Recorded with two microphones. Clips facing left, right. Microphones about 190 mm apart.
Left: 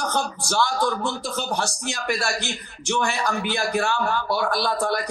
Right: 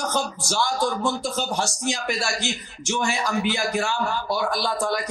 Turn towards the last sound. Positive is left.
turn(degrees=60)  # may be behind; listen again after turning